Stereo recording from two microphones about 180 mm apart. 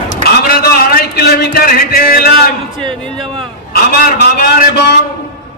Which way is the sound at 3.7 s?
55° left (ahead or behind).